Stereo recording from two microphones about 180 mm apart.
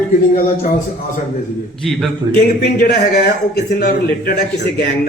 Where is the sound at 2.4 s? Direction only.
60° left (ahead or behind).